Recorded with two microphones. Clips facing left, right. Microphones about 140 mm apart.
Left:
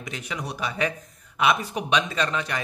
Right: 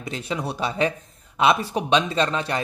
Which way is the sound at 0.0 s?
30° right (ahead or behind).